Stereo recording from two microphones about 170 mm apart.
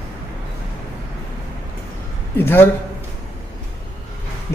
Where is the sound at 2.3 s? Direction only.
15° left (ahead or behind).